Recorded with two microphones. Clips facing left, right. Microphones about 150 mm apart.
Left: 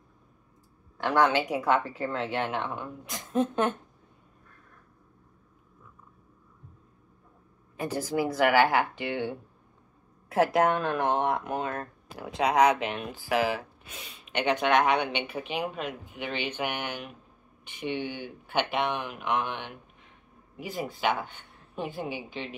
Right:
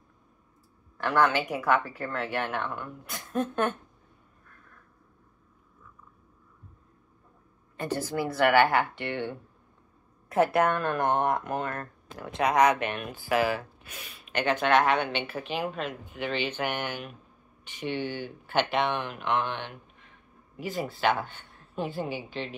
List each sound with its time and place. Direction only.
0.9 s speech: 15° left (ahead or behind)
7.7 s speech: 10° left (ahead or behind)